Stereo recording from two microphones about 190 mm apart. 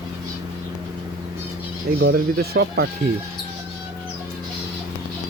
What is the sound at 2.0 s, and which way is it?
Speech, 60° right (ahead or behind).